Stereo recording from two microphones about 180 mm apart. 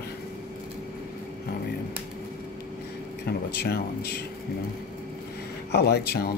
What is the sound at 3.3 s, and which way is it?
Speech, 60° left (ahead or behind).